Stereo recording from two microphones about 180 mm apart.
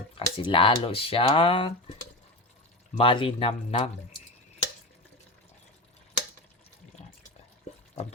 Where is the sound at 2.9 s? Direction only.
30° left (ahead or behind).